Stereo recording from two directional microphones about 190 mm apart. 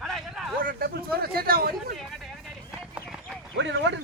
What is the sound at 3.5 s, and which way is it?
Speech, 70° right (ahead or behind).